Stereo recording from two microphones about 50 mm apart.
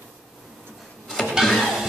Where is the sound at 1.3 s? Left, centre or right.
Centre.